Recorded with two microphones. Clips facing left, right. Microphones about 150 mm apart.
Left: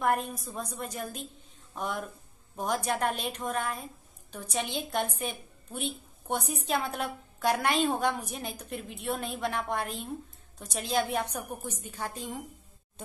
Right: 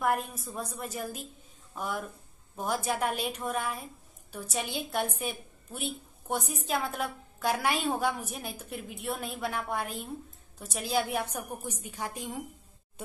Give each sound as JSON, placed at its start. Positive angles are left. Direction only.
{"t": 0.3, "sound": "a woman's voice", "side_deg": -5}